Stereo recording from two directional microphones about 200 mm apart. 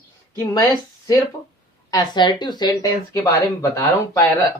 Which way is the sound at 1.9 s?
20° left (ahead or behind).